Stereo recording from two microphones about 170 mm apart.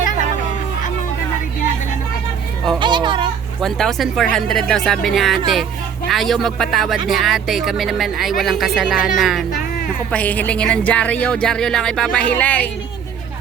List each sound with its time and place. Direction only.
2.7 s children playing: 25° right (ahead or behind)
3.6 s speech: centre (ahead or behind)
9.5 s music: 55° left (ahead or behind)
10.1 s speech: 10° left (ahead or behind)